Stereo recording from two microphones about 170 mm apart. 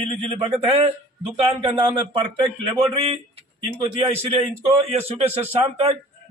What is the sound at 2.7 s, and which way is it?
Speech, 30° right (ahead or behind).